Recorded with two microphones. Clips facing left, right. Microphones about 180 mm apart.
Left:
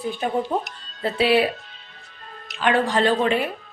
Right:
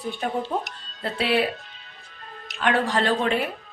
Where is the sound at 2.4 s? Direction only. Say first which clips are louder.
Left 2 dB; centre (ahead or behind).